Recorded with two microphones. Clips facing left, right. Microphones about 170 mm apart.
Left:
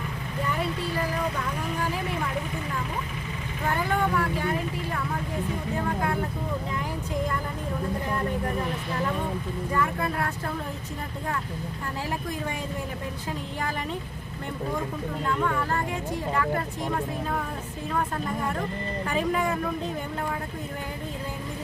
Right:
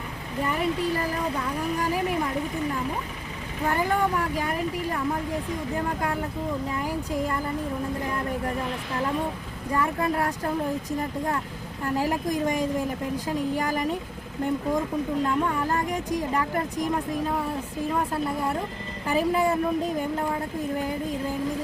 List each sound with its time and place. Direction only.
10.0 s speech: 35° right (ahead or behind)
11.9 s speech: 40° right (ahead or behind)
19.1 s speech: 35° right (ahead or behind)